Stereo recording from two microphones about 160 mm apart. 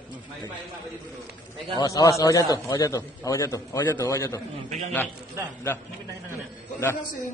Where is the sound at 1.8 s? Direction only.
20° left (ahead or behind).